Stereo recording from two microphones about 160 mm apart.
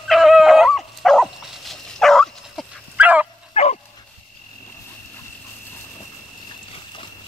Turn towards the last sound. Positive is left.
turn(degrees=30)  # may be behind; listen again after turning